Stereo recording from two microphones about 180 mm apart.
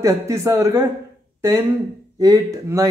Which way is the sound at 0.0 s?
15° right (ahead or behind).